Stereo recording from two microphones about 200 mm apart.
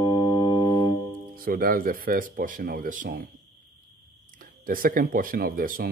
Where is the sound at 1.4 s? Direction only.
45° right (ahead or behind).